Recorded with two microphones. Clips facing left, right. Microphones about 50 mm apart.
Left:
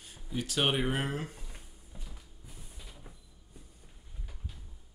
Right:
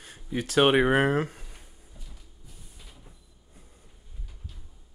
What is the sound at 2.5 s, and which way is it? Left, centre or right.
Train, centre.